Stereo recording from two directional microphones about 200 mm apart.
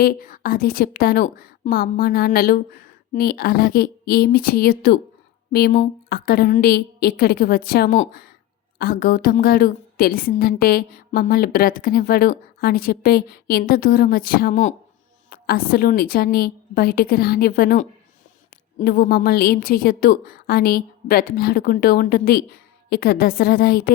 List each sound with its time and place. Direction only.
0.0 s a woman's voice: 45° left (ahead or behind)